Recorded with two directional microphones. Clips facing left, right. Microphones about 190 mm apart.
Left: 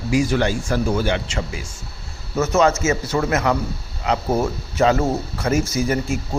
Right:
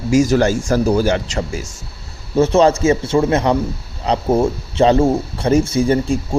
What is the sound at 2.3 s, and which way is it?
Speech, 30° right (ahead or behind).